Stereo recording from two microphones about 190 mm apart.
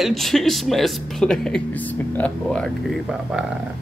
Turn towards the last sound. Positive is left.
turn(degrees=-5)  # may be behind; listen again after turning